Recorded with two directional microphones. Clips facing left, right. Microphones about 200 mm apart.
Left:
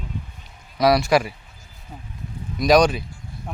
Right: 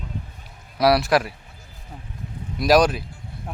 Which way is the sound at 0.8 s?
5° right (ahead or behind).